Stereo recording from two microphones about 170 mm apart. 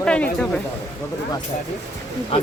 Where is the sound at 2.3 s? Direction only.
35° left (ahead or behind).